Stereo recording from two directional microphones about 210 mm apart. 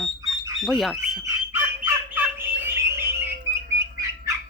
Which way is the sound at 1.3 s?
10° right (ahead or behind).